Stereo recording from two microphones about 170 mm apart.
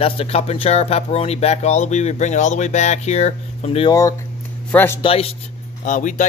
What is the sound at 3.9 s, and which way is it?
Speech, 20° left (ahead or behind).